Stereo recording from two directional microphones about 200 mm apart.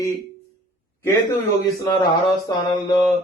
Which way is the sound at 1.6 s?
20° left (ahead or behind).